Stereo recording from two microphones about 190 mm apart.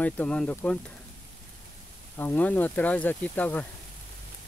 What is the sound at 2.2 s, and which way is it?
Speech, 10° left (ahead or behind).